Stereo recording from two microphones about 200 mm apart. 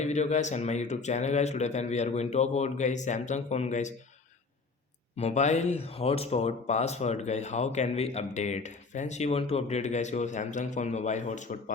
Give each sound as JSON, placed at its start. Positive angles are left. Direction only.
{"t": 0.0, "sound": "speech", "side_deg": 35}
{"t": 5.1, "sound": "speech", "side_deg": 35}